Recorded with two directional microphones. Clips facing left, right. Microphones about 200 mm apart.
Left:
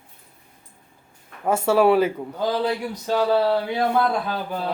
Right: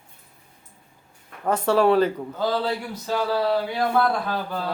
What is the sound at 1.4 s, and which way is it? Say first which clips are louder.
Speech: left 2 dB; 5° left (ahead or behind).